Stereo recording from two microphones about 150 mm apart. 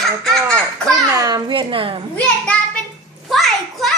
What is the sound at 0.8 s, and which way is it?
A child's voice, 25° right (ahead or behind).